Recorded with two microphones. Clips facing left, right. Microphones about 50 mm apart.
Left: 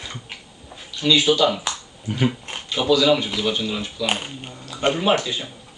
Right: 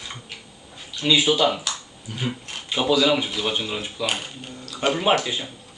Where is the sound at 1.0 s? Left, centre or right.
Centre.